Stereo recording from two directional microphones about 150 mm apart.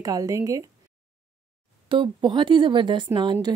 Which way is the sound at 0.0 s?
20° right (ahead or behind).